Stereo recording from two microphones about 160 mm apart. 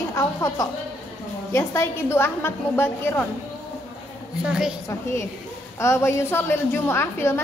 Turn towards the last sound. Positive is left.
turn(degrees=15)  # may be behind; listen again after turning